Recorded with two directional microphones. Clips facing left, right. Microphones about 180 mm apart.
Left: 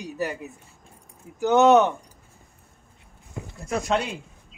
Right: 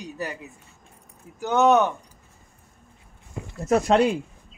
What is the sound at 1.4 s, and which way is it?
Speech, 20° left (ahead or behind).